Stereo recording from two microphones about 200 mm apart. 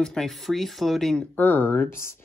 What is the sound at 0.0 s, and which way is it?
Speech, centre (ahead or behind).